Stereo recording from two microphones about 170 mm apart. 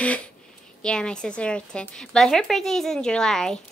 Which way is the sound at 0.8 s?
5° left (ahead or behind).